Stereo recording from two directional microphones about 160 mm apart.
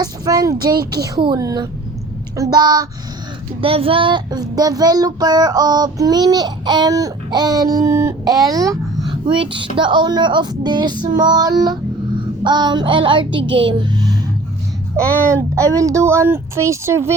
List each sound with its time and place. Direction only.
0.0 s speech: 20° right (ahead or behind)
1.0 s child singing: 25° right (ahead or behind)
3.6 s child singing: 35° right (ahead or behind)
9.0 s child singing: 30° right (ahead or behind)
14.9 s speech: 20° right (ahead or behind)